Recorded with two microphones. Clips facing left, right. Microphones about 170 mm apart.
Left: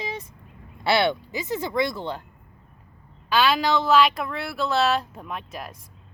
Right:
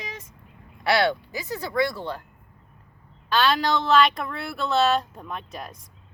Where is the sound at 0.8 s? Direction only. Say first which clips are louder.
Even; 25° left (ahead or behind).